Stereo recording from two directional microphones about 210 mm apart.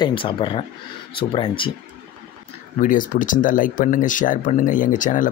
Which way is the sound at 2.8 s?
40° left (ahead or behind).